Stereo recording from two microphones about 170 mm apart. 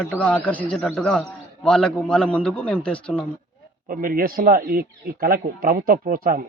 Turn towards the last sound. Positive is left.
turn(degrees=-55)  # may be behind; listen again after turning